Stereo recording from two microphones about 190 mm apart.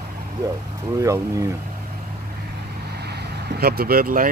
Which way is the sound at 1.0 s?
15° right (ahead or behind).